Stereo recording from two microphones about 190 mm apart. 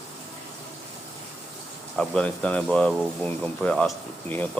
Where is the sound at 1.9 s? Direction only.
5° left (ahead or behind).